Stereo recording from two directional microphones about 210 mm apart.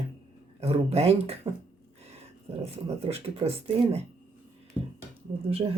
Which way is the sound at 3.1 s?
30° right (ahead or behind).